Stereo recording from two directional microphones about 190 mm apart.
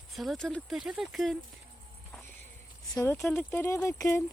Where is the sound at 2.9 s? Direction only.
15° left (ahead or behind).